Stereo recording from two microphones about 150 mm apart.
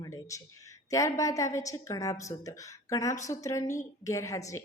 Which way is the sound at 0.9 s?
20° left (ahead or behind).